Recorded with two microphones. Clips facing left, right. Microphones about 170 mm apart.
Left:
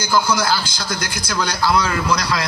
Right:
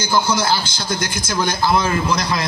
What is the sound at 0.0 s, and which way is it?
A man's voice, 25° right (ahead or behind).